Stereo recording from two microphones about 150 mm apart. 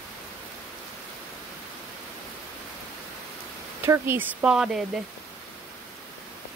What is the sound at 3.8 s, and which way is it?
Speech, 15° right (ahead or behind).